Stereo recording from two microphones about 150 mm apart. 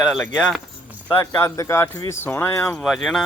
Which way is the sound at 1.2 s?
20° left (ahead or behind).